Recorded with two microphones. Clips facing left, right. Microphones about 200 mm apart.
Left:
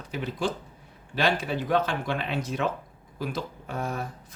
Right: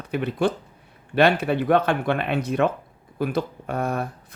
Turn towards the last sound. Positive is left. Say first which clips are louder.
# right 6 dB
turn(degrees=-60)  # may be behind; listen again after turning